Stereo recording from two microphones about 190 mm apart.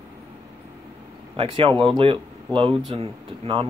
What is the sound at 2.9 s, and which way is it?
Speech, 30° right (ahead or behind).